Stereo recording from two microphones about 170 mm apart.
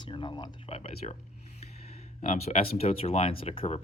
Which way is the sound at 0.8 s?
40° left (ahead or behind).